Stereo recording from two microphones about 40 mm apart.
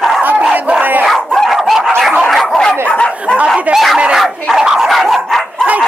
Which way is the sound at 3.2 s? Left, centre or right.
Right.